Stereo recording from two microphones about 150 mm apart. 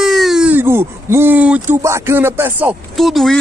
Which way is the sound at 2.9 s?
Centre (ahead or behind).